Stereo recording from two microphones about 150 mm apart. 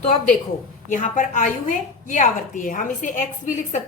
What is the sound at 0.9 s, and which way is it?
A woman's voice, 60° left (ahead or behind).